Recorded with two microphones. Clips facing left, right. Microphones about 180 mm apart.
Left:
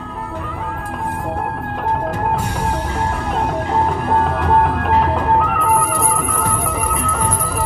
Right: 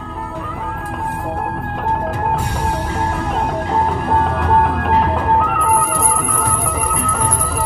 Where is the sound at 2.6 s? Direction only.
10° right (ahead or behind).